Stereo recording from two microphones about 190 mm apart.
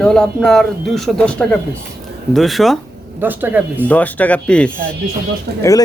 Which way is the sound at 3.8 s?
10° left (ahead or behind).